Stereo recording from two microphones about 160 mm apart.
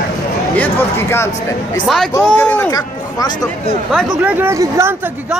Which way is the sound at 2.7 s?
25° left (ahead or behind).